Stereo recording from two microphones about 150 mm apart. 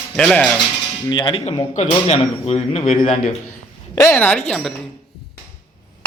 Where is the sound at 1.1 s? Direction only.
30° left (ahead or behind).